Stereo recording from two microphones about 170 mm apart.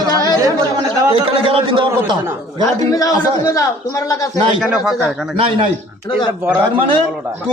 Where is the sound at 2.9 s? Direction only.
20° left (ahead or behind).